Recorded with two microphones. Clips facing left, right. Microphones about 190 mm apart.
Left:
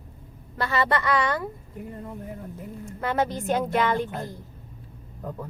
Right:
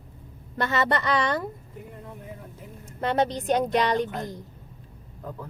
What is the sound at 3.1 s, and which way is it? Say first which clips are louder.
Speech: right 1 dB; 20° right (ahead or behind).